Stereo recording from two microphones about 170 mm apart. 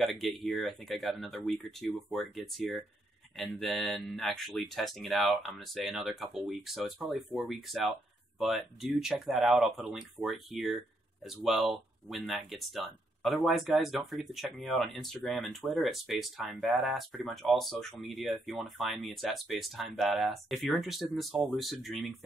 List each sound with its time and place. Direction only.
0.0 s speech: centre (ahead or behind)